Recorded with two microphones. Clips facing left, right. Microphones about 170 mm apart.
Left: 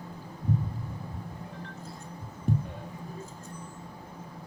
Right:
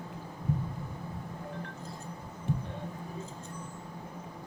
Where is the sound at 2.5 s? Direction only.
40° left (ahead or behind).